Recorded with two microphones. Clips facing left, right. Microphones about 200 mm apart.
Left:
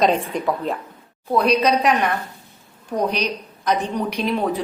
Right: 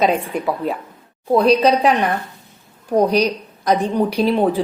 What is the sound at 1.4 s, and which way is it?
Speech, 30° right (ahead or behind).